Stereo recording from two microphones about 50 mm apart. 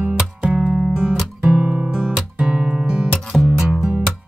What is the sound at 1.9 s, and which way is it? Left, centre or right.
Guitar, right.